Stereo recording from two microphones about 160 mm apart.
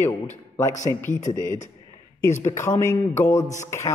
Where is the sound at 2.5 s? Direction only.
20° left (ahead or behind).